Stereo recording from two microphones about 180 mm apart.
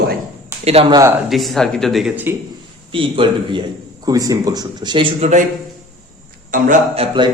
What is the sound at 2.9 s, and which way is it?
Speech, 30° right (ahead or behind).